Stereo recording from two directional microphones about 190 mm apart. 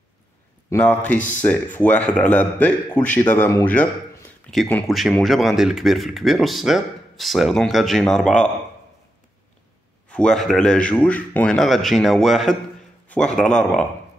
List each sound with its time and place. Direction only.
0.7 s speech: 10° left (ahead or behind)
1.1 s speech: 40° left (ahead or behind)
1.4 s speech: 10° left (ahead or behind)
10.0 s speech: 5° left (ahead or behind)